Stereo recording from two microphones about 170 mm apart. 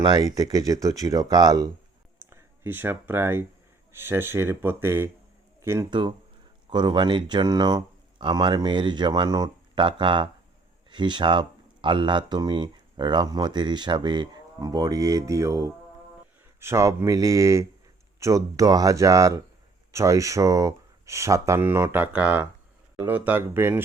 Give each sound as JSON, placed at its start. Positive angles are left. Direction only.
{"t": 0.0, "sound": "speech", "side_deg": -20}
{"t": 2.1, "sound": "clicking", "side_deg": -15}
{"t": 3.9, "sound": "speech", "side_deg": -15}
{"t": 5.9, "sound": "speech", "side_deg": -30}